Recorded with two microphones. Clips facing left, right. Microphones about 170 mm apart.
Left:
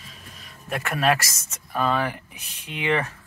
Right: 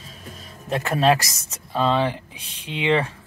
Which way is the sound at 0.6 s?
20° right (ahead or behind).